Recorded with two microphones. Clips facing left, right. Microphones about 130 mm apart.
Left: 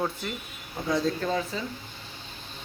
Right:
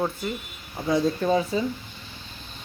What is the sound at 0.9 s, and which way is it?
Speech, 15° right (ahead or behind).